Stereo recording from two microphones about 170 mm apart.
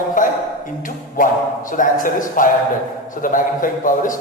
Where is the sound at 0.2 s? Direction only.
50° left (ahead or behind).